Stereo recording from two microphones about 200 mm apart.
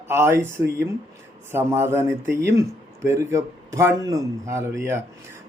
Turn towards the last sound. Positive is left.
turn(degrees=-10)  # may be behind; listen again after turning